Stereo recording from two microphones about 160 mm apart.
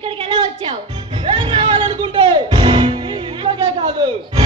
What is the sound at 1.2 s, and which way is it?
Music, 30° right (ahead or behind).